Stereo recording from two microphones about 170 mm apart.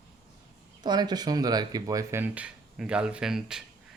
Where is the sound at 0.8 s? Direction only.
25° right (ahead or behind).